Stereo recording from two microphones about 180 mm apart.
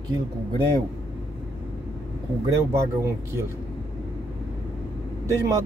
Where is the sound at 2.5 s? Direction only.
15° right (ahead or behind).